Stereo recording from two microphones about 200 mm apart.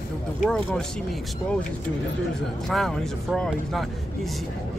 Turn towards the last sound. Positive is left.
turn(degrees=0)  # may be behind; listen again after turning